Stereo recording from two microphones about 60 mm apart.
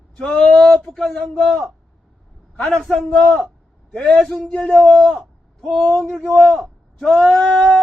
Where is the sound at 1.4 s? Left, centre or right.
Centre.